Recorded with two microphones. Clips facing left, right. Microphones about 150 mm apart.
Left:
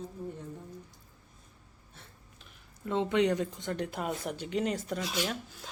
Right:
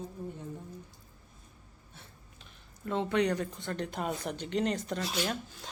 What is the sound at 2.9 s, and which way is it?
Speech, 20° left (ahead or behind).